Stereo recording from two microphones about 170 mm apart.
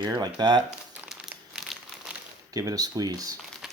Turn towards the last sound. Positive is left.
turn(degrees=-5)  # may be behind; listen again after turning